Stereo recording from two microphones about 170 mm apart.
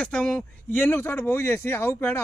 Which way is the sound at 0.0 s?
5° left (ahead or behind).